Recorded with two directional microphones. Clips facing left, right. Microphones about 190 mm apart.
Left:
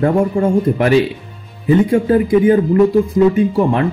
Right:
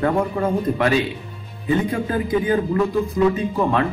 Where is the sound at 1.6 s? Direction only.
30° left (ahead or behind).